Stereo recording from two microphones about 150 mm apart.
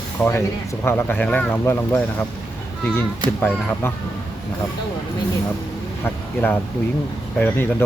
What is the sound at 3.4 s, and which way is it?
Speech, 15° left (ahead or behind).